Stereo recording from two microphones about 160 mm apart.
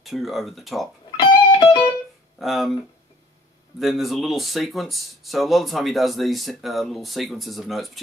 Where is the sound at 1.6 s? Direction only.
15° left (ahead or behind).